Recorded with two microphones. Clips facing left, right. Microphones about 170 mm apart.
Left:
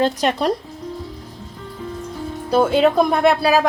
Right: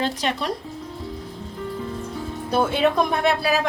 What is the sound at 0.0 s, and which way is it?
Speech, 45° left (ahead or behind).